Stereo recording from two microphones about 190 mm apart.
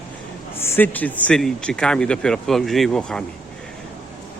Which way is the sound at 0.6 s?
10° left (ahead or behind).